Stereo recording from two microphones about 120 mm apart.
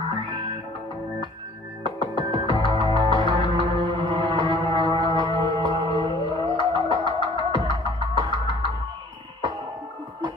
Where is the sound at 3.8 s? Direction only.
45° right (ahead or behind).